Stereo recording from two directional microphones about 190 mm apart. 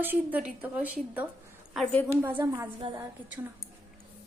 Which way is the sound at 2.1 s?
10° right (ahead or behind).